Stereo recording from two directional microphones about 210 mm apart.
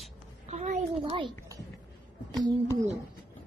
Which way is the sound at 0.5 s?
35° right (ahead or behind).